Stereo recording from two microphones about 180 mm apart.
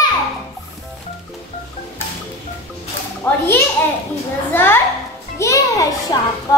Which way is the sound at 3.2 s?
10° left (ahead or behind).